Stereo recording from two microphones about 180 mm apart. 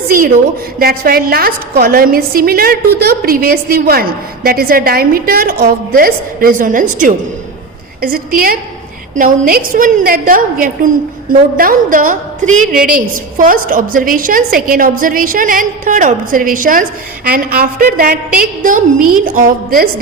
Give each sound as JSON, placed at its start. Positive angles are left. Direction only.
{"t": 0.8, "sound": "a woman's voice", "side_deg": -55}